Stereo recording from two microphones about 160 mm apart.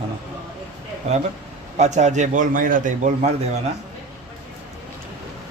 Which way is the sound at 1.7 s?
45° right (ahead or behind).